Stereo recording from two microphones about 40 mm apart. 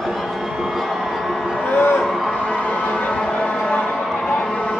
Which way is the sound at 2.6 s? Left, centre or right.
Left.